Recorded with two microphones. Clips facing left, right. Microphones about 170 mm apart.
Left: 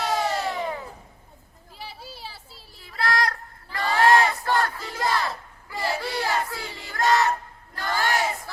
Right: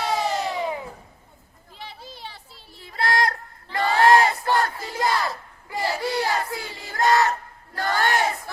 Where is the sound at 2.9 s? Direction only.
25° right (ahead or behind).